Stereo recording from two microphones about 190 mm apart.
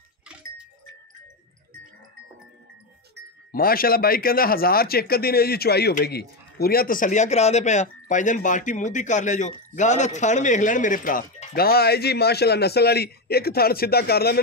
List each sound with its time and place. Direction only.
3.5 s speech: 50° left (ahead or behind)